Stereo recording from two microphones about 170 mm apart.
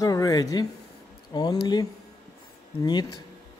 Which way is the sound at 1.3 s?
25° left (ahead or behind).